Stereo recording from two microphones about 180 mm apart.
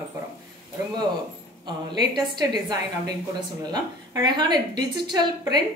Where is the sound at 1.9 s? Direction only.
25° right (ahead or behind).